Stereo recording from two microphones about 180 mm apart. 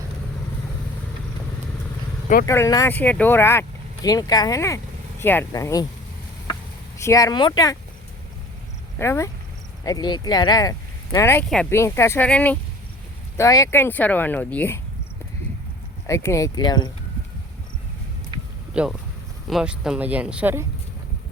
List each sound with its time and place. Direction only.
2.5 s speech: 15° left (ahead or behind)
7.0 s speech: 20° left (ahead or behind)
9.0 s speech: 15° left (ahead or behind)
11.4 s speech: 5° left (ahead or behind)
11.7 s speech: 15° left (ahead or behind)
16.0 s speech: 15° left (ahead or behind)
18.7 s speech: 5° right (ahead or behind)